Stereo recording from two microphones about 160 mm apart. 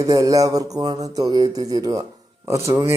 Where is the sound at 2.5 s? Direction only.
15° right (ahead or behind).